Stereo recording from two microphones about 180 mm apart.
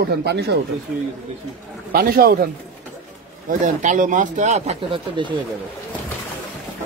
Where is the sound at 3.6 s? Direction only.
45° right (ahead or behind).